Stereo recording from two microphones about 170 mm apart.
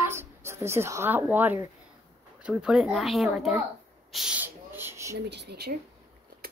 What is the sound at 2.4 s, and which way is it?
Speech, 5° right (ahead or behind).